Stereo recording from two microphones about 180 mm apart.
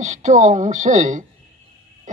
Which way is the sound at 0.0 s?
40° right (ahead or behind).